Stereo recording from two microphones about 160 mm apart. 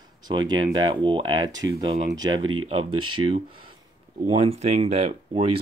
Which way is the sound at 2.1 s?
25° right (ahead or behind).